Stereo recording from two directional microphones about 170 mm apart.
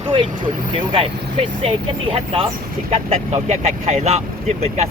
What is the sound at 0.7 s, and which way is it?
Speech, 35° right (ahead or behind).